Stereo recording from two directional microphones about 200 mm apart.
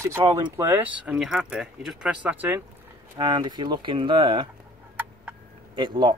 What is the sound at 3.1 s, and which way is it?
Speech, 20° right (ahead or behind).